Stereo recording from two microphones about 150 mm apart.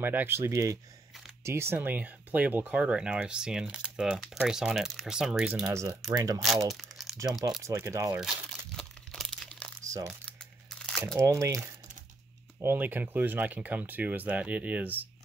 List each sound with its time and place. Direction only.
0.0 s speech: 15° right (ahead or behind)
5.7 s speech: 20° right (ahead or behind)
6.7 s crumpling: centre (ahead or behind)
7.6 s speech: 20° right (ahead or behind)
8.2 s crumpling: centre (ahead or behind)
9.8 s crumpling: 20° right (ahead or behind)
10.4 s crunch: 5° left (ahead or behind)
11.1 s speech: 20° right (ahead or behind)